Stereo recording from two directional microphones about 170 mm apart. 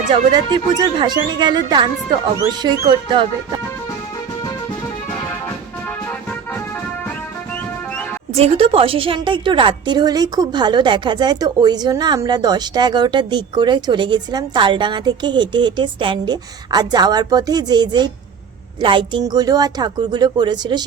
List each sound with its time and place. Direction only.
0.5 s a woman's voice: 25° right (ahead or behind)
8.3 s a woman's voice: 35° right (ahead or behind)